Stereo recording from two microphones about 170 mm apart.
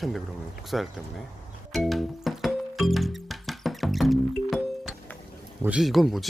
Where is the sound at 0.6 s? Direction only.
Centre (ahead or behind).